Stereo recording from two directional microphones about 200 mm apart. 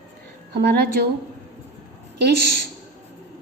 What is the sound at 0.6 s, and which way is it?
Speech, 55° right (ahead or behind).